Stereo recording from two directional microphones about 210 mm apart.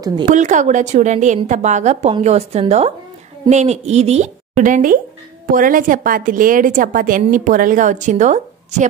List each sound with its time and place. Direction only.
0.2 s a woman's voice: 35° right (ahead or behind)